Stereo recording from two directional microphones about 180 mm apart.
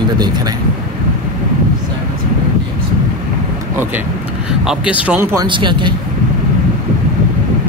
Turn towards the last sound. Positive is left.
turn(degrees=-25)  # may be behind; listen again after turning